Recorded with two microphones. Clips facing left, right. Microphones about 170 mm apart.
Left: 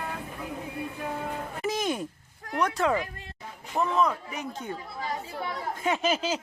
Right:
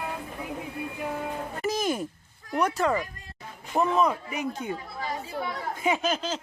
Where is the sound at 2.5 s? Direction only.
5° right (ahead or behind).